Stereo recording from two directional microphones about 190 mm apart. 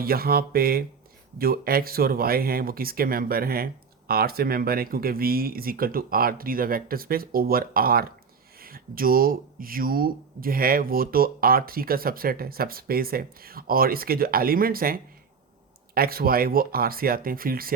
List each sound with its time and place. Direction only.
0.0 s speech: 50° right (ahead or behind)